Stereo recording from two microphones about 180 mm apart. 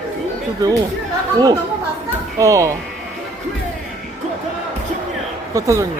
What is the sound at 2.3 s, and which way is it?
Speech, 20° right (ahead or behind).